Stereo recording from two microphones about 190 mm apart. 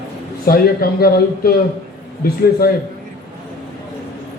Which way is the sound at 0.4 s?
50° left (ahead or behind).